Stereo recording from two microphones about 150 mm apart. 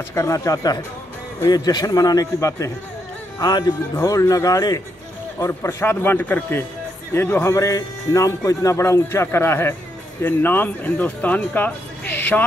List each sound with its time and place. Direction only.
0.1 s a man's voice: 20° left (ahead or behind)